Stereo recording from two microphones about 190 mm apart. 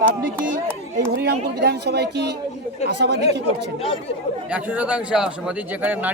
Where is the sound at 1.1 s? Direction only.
60° right (ahead or behind).